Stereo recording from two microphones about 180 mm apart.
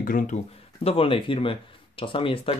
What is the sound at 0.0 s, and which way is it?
Speech, 50° left (ahead or behind).